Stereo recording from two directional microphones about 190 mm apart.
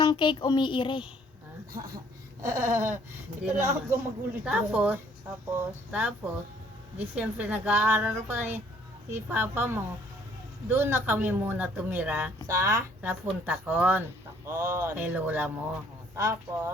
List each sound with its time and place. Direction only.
0.0 s speech: 25° left (ahead or behind)
2.4 s speech: 15° right (ahead or behind)